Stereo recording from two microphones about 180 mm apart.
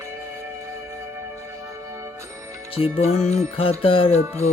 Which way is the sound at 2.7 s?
35° left (ahead or behind).